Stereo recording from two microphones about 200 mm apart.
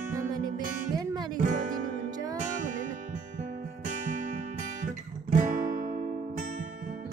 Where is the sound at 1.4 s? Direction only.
40° right (ahead or behind).